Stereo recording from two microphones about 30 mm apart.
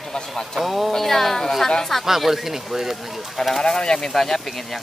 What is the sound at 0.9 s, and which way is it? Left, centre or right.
Speech, centre.